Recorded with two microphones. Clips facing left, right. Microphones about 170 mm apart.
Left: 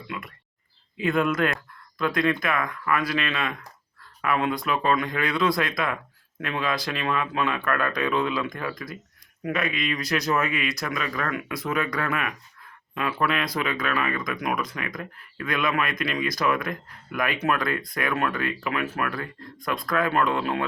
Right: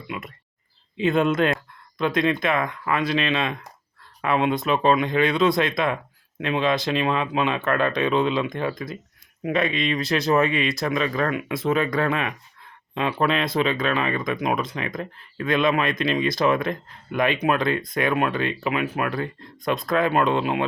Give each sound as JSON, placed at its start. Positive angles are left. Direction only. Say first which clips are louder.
{"t": 0.1, "sound": "speech", "louder": "right 3 dB", "side_deg": -20}